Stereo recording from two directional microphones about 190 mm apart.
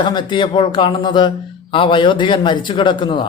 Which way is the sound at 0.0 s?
25° left (ahead or behind).